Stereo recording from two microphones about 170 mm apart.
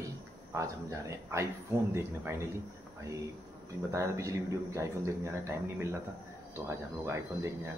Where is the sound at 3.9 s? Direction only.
20° right (ahead or behind).